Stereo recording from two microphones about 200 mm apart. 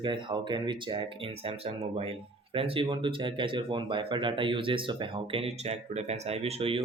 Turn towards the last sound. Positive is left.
turn(degrees=-30)  # may be behind; listen again after turning